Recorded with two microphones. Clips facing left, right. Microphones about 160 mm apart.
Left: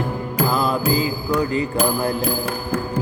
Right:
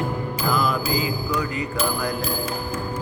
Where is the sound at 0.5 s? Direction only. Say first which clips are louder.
Left 1 dB; 30° left (ahead or behind).